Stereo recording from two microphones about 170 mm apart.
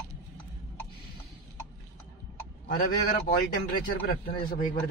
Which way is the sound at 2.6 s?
60° left (ahead or behind).